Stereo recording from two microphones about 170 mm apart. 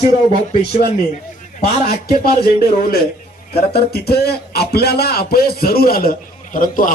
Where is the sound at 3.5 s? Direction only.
65° left (ahead or behind).